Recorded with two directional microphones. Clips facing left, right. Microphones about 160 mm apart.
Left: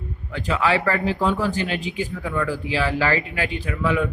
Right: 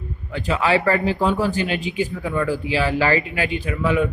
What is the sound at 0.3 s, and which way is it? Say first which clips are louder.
Speech: right 2 dB; 20° right (ahead or behind).